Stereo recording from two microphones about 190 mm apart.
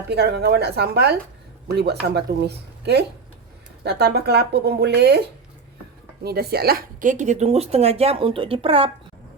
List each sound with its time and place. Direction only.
0.1 s speech: 60° right (ahead or behind)
6.2 s speech: 55° right (ahead or behind); by 8.9 s 30° right (ahead or behind)